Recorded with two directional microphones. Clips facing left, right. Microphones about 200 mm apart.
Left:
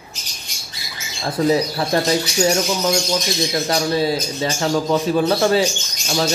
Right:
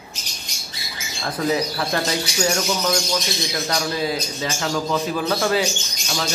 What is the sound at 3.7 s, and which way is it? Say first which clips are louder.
A man's voice: left 4 dB; 30° left (ahead or behind).